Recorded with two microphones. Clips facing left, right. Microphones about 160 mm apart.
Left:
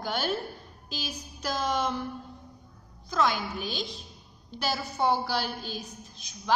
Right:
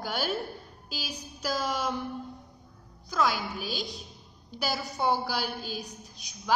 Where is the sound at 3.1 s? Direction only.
5° right (ahead or behind).